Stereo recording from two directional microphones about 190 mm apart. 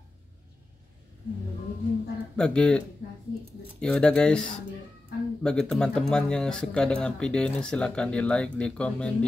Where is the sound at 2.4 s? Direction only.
5° left (ahead or behind).